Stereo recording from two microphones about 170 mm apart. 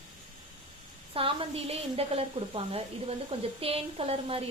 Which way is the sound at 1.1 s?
30° right (ahead or behind).